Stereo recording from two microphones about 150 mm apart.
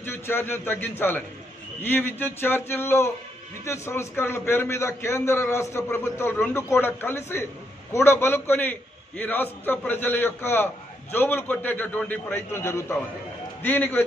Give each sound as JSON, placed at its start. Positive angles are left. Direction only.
{"t": 0.0, "sound": "a man's voice", "side_deg": 15}